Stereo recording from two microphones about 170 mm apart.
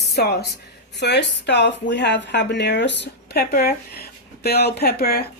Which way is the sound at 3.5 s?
65° left (ahead or behind).